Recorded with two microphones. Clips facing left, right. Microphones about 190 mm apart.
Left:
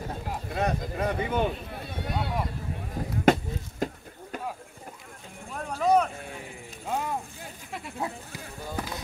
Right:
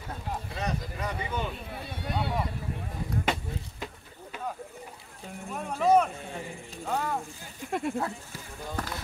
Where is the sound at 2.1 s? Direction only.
Centre (ahead or behind).